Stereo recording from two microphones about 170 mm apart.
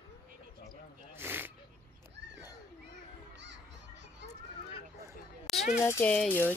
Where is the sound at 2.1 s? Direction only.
90° right.